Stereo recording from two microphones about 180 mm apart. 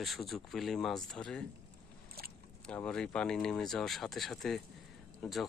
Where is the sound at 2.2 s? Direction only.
55° right (ahead or behind).